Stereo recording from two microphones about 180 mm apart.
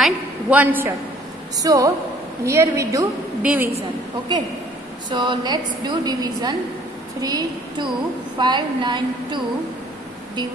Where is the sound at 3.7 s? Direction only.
30° right (ahead or behind).